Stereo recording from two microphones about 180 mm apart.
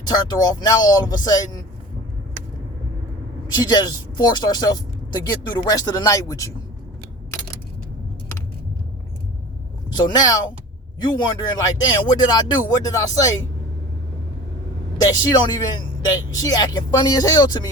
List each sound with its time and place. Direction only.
0.0 s speech: 20° left (ahead or behind)
3.4 s speech: 20° left (ahead or behind)
9.9 s speech: 20° left (ahead or behind)
15.1 s speech: 20° left (ahead or behind)